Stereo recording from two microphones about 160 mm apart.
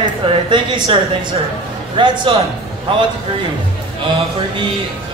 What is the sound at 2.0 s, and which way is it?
Speech, 30° right (ahead or behind).